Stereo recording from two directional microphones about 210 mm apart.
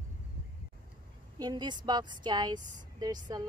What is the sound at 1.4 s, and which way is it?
A woman's voice, 20° right (ahead or behind).